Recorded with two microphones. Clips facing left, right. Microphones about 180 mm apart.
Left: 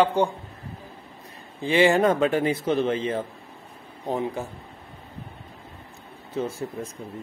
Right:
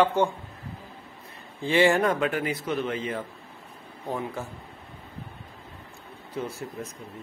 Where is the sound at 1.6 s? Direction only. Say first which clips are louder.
Left 2 dB; 20° left (ahead or behind).